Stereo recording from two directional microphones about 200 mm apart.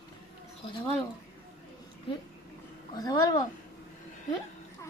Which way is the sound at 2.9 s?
20° left (ahead or behind).